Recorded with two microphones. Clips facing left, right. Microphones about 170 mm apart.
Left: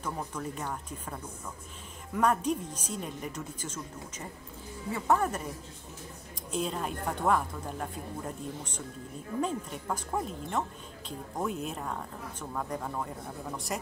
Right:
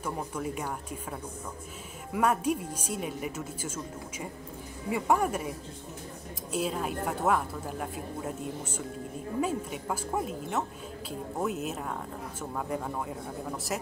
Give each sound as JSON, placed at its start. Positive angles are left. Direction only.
{"t": 0.0, "sound": "a woman's voice", "side_deg": -10}
{"t": 2.1, "sound": "a woman's voice", "side_deg": -10}
{"t": 6.5, "sound": "a woman's voice", "side_deg": -5}